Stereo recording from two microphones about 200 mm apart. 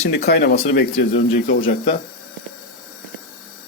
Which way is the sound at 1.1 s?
40° left (ahead or behind).